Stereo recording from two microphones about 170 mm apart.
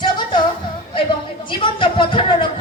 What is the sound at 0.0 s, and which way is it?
Music, 25° left (ahead or behind).